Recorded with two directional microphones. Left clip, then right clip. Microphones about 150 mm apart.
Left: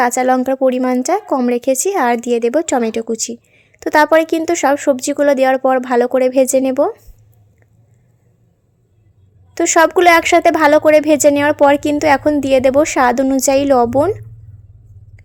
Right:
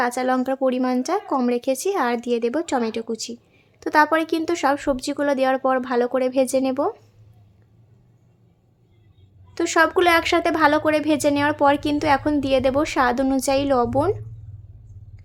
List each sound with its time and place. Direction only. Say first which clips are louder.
0.0 s speech: left 8 dB; 35° left (ahead or behind)
9.6 s speech: left 7 dB; 35° left (ahead or behind)